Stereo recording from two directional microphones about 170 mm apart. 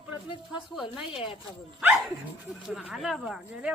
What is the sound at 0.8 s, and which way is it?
Speech, 30° left (ahead or behind).